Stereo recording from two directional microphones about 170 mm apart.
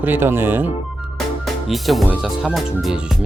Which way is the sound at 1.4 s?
Centre (ahead or behind).